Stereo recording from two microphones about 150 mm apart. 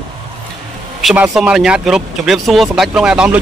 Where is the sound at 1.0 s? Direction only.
5° right (ahead or behind).